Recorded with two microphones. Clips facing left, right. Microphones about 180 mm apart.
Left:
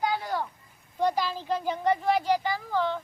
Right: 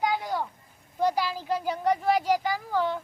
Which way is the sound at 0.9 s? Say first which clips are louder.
Right 1 dB; 10° right (ahead or behind).